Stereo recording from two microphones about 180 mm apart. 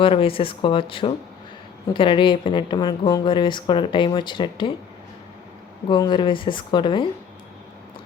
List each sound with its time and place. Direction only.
0.0 s a woman's voice: 30° left (ahead or behind)
5.9 s a woman's voice: 25° left (ahead or behind)